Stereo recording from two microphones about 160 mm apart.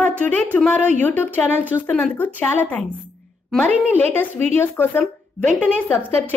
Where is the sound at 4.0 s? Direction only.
10° left (ahead or behind).